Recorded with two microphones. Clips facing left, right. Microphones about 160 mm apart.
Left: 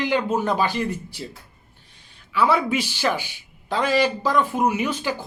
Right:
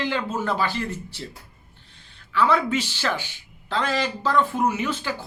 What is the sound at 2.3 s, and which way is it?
Speech, 10° left (ahead or behind).